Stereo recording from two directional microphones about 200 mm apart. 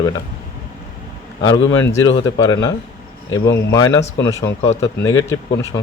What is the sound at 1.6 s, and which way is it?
Speech, 70° left (ahead or behind).